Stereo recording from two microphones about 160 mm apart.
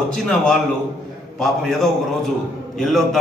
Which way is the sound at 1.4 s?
Centre (ahead or behind).